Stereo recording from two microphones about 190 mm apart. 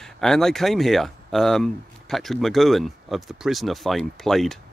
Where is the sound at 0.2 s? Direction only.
Centre (ahead or behind).